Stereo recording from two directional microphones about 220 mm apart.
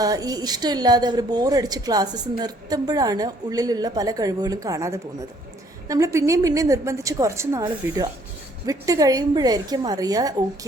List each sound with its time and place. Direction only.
0.0 s a woman's voice: 15° right (ahead or behind)